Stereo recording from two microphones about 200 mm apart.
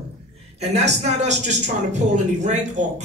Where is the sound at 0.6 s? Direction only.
35° right (ahead or behind).